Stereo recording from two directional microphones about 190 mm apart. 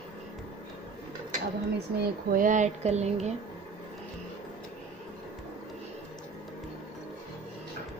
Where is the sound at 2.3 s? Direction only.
40° right (ahead or behind).